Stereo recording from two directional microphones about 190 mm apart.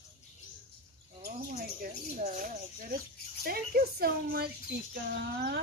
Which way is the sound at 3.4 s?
55° right (ahead or behind).